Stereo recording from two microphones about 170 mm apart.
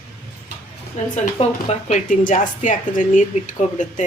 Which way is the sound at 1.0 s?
45° left (ahead or behind).